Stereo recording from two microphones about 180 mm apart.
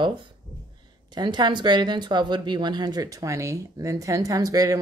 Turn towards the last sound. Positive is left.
turn(degrees=-20)  # may be behind; listen again after turning